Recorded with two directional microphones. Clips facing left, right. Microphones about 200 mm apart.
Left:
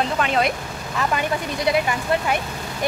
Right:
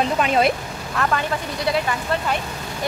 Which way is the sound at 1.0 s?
15° left (ahead or behind).